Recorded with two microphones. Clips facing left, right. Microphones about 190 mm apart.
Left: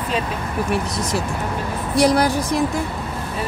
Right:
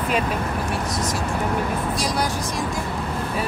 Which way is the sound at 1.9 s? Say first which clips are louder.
Left 8 dB; 60° left (ahead or behind).